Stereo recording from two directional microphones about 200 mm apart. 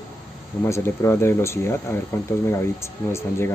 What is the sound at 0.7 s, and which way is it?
Speech, 15° left (ahead or behind).